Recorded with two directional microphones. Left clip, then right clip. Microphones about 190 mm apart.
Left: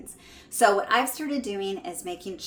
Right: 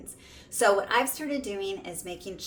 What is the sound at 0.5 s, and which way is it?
Speech, 15° left (ahead or behind).